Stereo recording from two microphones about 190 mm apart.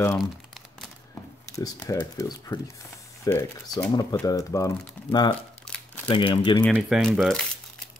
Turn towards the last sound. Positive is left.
turn(degrees=0)  # may be behind; listen again after turning